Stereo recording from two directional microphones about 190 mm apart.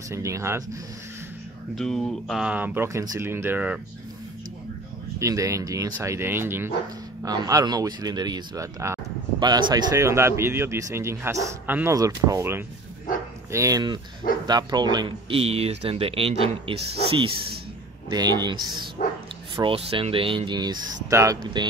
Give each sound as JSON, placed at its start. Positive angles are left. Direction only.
{"t": 0.1, "sound": "speech", "side_deg": -15}
{"t": 1.8, "sound": "speech", "side_deg": 5}
{"t": 5.2, "sound": "speech", "side_deg": -15}